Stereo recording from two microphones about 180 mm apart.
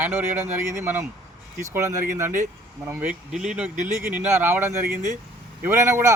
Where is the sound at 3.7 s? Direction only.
45° right (ahead or behind).